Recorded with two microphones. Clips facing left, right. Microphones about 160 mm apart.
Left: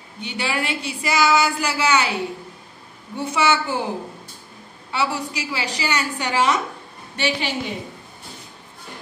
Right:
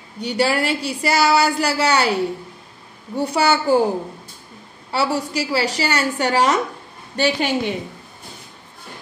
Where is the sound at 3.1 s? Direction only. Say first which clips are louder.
Right 2 dB; 40° right (ahead or behind).